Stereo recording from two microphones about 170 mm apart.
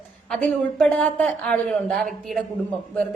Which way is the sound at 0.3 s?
5° left (ahead or behind).